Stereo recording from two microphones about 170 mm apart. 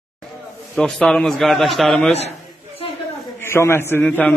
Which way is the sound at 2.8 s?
35° left (ahead or behind).